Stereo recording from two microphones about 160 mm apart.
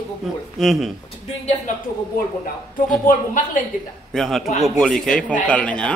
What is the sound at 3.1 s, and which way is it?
Speech, 55° left (ahead or behind).